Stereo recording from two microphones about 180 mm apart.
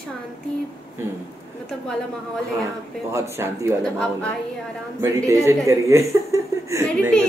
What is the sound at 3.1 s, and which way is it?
Speech, 15° right (ahead or behind).